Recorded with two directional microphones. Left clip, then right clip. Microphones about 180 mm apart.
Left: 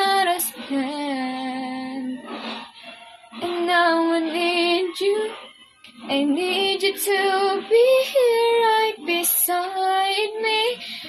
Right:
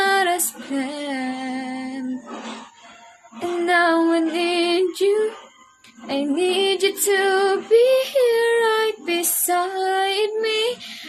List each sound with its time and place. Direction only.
0.0 s music: 20° right (ahead or behind)
3.6 s female singing: 20° right (ahead or behind)
6.1 s music: 20° right (ahead or behind)
7.1 s child singing: 20° right (ahead or behind)